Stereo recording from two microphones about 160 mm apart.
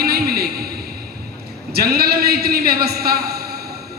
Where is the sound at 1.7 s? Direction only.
70° right (ahead or behind).